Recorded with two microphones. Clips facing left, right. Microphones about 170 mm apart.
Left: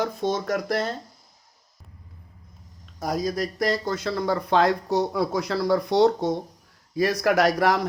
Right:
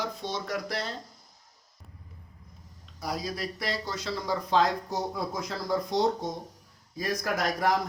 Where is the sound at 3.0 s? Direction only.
45° left (ahead or behind).